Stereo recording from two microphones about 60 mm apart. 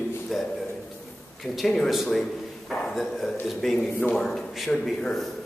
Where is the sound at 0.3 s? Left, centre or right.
Centre.